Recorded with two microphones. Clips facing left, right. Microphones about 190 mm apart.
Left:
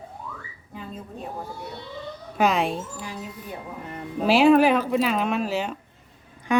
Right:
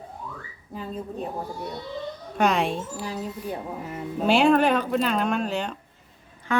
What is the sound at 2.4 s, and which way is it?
Speech, centre (ahead or behind).